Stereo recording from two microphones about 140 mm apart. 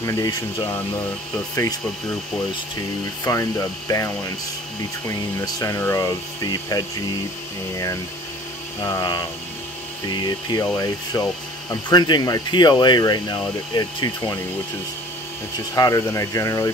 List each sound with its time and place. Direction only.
0.0 s speech: 25° left (ahead or behind)
3.3 s speech: 25° left (ahead or behind)
15.7 s speech: 25° left (ahead or behind)